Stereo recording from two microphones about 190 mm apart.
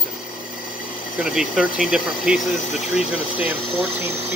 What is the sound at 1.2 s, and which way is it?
Speech, 5° right (ahead or behind).